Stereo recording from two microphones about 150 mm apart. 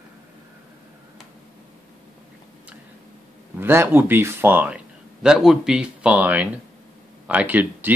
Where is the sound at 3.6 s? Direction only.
15° right (ahead or behind).